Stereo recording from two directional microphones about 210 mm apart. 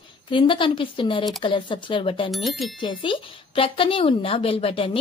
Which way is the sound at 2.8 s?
25° left (ahead or behind).